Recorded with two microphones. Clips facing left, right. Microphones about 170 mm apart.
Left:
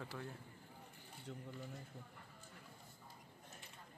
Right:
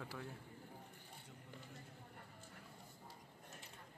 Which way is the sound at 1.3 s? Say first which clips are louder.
Left 14 dB; 80° left.